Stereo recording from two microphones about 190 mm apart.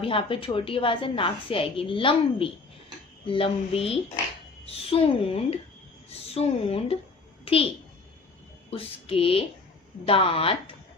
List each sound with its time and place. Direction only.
0.0 s a woman's voice: 30° left (ahead or behind)
8.7 s a woman's voice: 30° left (ahead or behind)